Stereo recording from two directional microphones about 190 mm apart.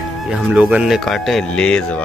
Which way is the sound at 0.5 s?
5° right (ahead or behind).